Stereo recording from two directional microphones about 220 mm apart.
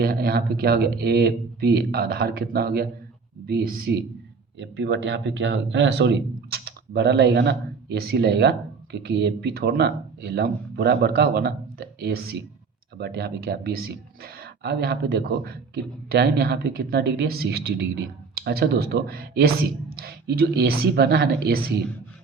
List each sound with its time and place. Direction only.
0.0 s speech: 45° right (ahead or behind)
4.6 s speech: 55° right (ahead or behind)